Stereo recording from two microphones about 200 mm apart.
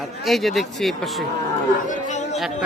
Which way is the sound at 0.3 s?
Centre (ahead or behind).